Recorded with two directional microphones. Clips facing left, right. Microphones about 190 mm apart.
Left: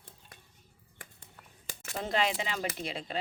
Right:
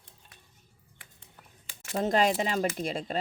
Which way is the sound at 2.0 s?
40° right (ahead or behind).